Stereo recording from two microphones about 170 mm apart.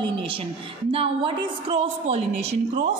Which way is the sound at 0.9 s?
30° right (ahead or behind).